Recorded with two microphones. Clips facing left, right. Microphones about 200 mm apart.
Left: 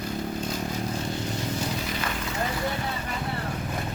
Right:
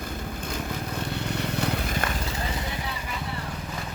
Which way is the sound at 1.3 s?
65° right (ahead or behind).